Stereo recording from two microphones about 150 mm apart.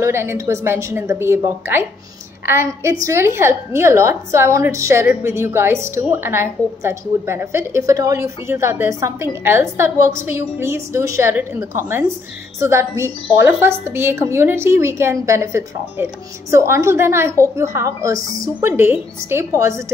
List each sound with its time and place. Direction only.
0.0 s a woman's voice: 15° right (ahead or behind)